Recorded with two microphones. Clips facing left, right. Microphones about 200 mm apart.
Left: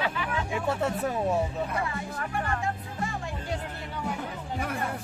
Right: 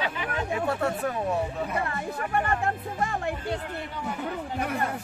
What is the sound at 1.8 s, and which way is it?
Speech, 60° right (ahead or behind).